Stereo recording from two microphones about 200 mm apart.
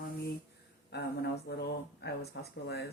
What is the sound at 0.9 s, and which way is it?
Speech, 55° left (ahead or behind).